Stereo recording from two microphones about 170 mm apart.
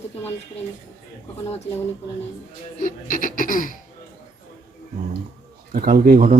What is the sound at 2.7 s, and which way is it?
Speech, 55° left (ahead or behind).